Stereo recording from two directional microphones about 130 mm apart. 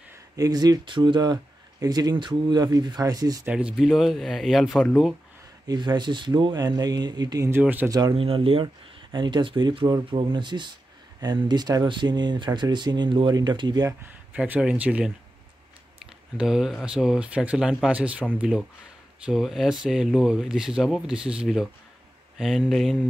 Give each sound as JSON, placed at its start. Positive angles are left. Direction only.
{"t": 0.4, "sound": "speech", "side_deg": -30}
{"t": 3.4, "sound": "speech", "side_deg": -10}
{"t": 5.7, "sound": "speech", "side_deg": -35}
{"t": 7.6, "sound": "speech", "side_deg": -15}
{"t": 8.1, "sound": "speech", "side_deg": -45}
{"t": 14.3, "sound": "speech", "side_deg": -10}
{"t": 16.3, "sound": "speech", "side_deg": -5}
{"t": 19.2, "sound": "speech", "side_deg": 0}